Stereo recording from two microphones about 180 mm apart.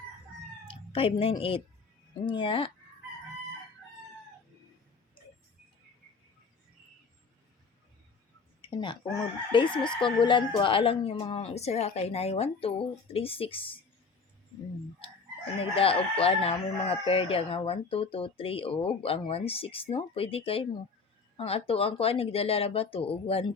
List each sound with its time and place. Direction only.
0.7 s a woman's voice: 30° left (ahead or behind)
8.7 s speech: 25° left (ahead or behind)
15.6 s speech: 30° left (ahead or behind)